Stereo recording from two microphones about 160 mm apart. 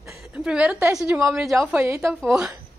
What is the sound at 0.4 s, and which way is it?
A woman's voice, 5° right (ahead or behind).